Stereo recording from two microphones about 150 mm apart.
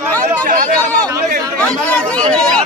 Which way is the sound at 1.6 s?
10° left (ahead or behind).